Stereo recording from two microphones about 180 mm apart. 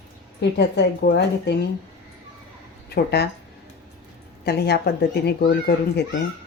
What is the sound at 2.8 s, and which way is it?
Speech, 65° left (ahead or behind).